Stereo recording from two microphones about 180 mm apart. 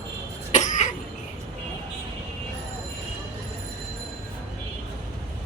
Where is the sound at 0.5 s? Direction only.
40° left (ahead or behind).